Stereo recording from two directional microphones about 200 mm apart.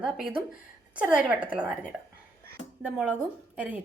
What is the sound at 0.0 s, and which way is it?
A woman's voice, 5° right (ahead or behind).